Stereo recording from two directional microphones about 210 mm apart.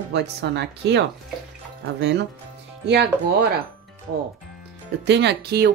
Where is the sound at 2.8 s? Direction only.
55° right (ahead or behind).